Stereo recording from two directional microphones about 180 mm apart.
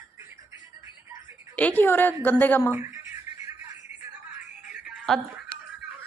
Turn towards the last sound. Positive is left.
turn(degrees=-5)  # may be behind; listen again after turning